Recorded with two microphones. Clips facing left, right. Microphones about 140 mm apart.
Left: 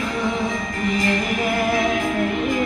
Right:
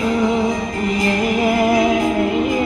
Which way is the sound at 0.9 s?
20° right (ahead or behind).